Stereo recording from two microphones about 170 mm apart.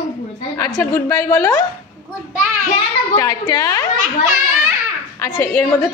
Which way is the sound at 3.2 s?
20° left (ahead or behind).